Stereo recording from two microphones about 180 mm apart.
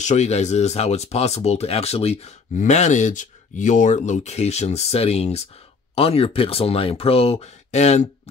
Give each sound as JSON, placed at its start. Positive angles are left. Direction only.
{"t": 0.0, "sound": "speech", "side_deg": 40}